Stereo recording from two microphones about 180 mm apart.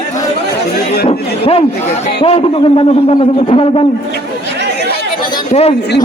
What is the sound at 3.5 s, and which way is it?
Speech, 30° left (ahead or behind).